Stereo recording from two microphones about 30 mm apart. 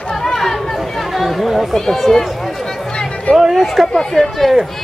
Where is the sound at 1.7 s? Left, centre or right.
Centre.